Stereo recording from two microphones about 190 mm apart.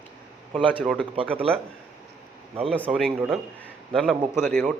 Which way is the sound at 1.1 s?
30° right (ahead or behind).